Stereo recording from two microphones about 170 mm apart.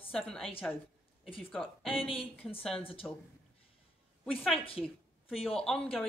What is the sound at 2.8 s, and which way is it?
Speech, 35° left (ahead or behind).